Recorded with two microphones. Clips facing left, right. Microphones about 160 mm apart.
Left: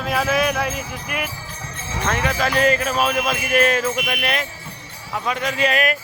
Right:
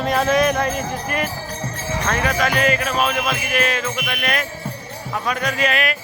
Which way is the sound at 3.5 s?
45° left (ahead or behind).